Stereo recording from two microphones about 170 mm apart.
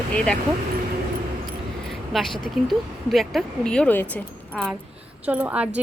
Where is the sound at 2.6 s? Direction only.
Centre (ahead or behind).